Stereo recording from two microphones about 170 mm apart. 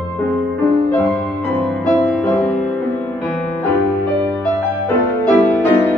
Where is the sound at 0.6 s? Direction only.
10° left (ahead or behind).